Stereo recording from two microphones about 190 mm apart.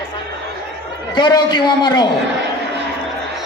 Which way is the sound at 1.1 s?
25° left (ahead or behind).